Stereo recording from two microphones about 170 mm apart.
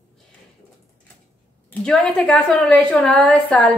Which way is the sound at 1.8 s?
5° left (ahead or behind).